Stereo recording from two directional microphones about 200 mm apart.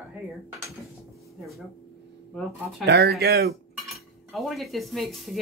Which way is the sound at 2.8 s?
55° right (ahead or behind).